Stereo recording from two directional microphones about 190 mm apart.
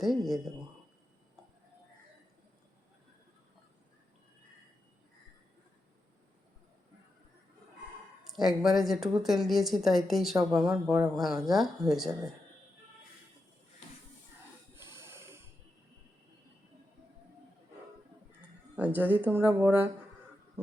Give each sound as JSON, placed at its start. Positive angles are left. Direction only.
{"t": 0.0, "sound": "speech", "side_deg": 0}
{"t": 8.6, "sound": "speech", "side_deg": 0}
{"t": 14.8, "sound": "a sound", "side_deg": -15}
{"t": 18.8, "sound": "speech", "side_deg": -10}